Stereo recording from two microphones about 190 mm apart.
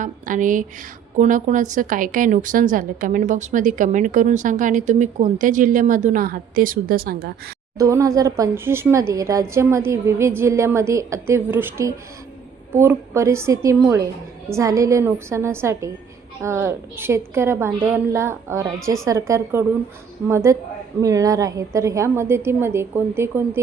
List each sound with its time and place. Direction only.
0.0 s a woman's voice: 45° right (ahead or behind)
7.8 s speech: 15° right (ahead or behind)